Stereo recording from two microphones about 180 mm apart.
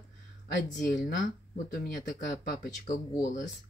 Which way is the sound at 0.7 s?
45° left (ahead or behind).